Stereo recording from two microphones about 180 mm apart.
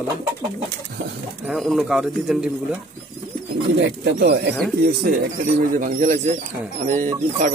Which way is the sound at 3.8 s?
70° right (ahead or behind).